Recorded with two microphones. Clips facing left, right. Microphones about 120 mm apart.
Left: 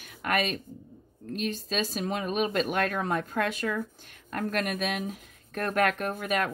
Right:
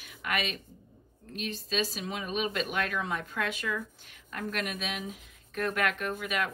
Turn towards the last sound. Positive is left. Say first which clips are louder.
# left 3 dB
turn(degrees=45)  # may be behind; listen again after turning